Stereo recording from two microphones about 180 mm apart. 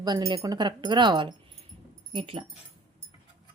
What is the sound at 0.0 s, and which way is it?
A woman's voice, 20° right (ahead or behind).